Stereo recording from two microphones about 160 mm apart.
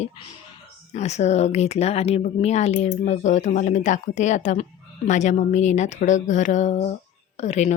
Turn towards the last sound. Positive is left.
turn(degrees=45)  # may be behind; listen again after turning